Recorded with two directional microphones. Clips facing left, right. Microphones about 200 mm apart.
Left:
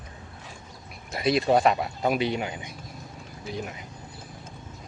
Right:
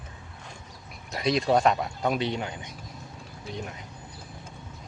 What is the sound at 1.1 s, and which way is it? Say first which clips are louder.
Speech: left 2 dB; 5° left (ahead or behind).